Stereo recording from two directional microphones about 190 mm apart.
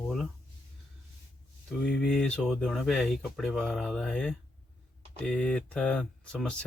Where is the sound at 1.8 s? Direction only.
5° left (ahead or behind).